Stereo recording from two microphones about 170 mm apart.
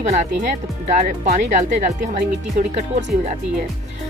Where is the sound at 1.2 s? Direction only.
50° right (ahead or behind).